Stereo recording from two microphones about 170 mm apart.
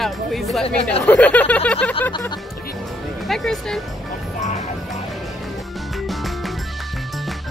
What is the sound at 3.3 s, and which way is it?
Speech, centre (ahead or behind).